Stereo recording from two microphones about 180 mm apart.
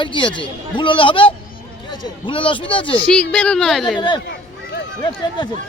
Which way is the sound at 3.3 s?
5° left (ahead or behind).